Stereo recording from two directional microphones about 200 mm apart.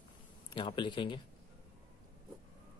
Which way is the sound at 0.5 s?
25° left (ahead or behind).